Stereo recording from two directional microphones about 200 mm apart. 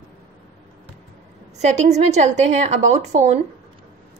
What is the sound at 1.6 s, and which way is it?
A woman's voice, 35° right (ahead or behind).